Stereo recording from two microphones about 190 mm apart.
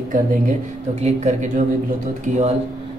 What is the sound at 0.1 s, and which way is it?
Speech, 40° right (ahead or behind).